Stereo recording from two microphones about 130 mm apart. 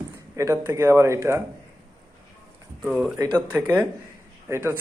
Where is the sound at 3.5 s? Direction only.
15° right (ahead or behind).